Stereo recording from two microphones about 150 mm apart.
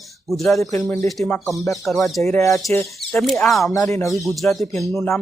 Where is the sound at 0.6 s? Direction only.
20° left (ahead or behind).